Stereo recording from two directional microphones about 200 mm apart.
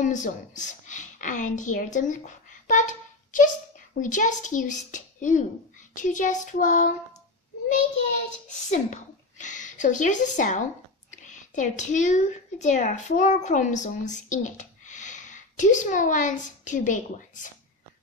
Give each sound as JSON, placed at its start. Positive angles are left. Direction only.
{"t": 0.0, "sound": "a woman's voice", "side_deg": 40}
{"t": 8.5, "sound": "a woman's voice", "side_deg": 35}